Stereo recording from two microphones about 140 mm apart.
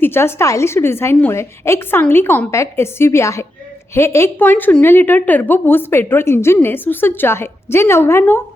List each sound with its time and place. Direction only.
0.0 s a woman's voice: 15° left (ahead or behind)